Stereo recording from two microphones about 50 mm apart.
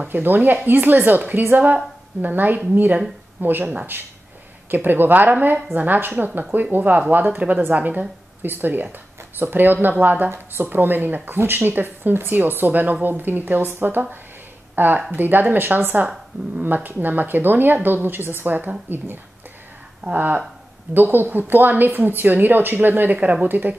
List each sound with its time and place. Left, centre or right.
0.1 s a woman's voice: right
10.3 s a woman's voice: right
20.1 s a woman's voice: right